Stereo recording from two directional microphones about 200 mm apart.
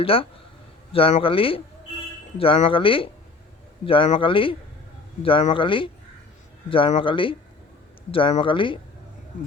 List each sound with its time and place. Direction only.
0.0 s speech: 25° left (ahead or behind)